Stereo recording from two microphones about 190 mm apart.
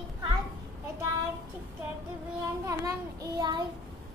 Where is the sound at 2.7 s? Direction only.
15° right (ahead or behind).